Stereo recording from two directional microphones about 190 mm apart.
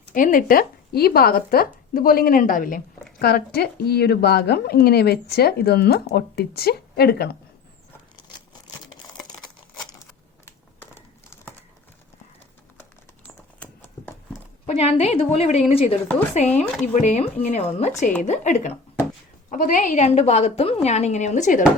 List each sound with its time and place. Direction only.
0.1 s a woman's voice: 45° left (ahead or behind)
10.4 s crumpling: 15° left (ahead or behind)
13.2 s clip-clop: 10° left (ahead or behind)
14.7 s a woman's voice: 35° left (ahead or behind)